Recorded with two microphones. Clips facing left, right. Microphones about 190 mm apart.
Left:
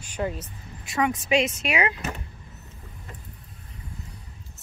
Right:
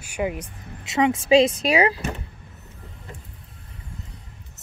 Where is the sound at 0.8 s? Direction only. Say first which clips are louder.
Right 4 dB; 25° right (ahead or behind).